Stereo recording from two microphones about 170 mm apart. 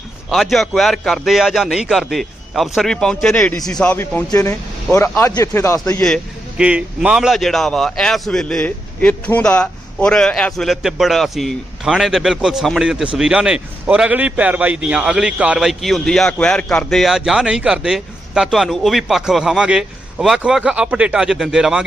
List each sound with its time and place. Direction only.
0.3 s a man's voice: centre (ahead or behind); by 6.0 s 15° left (ahead or behind)
6.6 s a man's voice: 5° right (ahead or behind)